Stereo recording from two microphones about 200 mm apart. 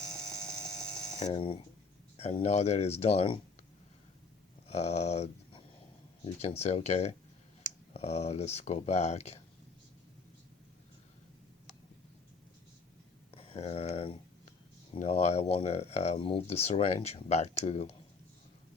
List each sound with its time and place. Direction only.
0.0 s a sound: 5° left (ahead or behind)
1.2 s speech: 25° left (ahead or behind)
4.7 s speech: 35° left (ahead or behind)
13.3 s speech: 30° left (ahead or behind)